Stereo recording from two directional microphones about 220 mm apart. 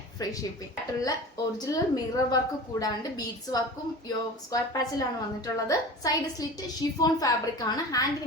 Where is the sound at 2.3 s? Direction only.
15° left (ahead or behind).